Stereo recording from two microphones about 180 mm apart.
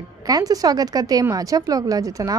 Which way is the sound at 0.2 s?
20° right (ahead or behind).